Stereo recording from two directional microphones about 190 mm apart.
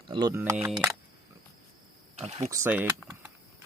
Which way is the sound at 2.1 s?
35° right (ahead or behind).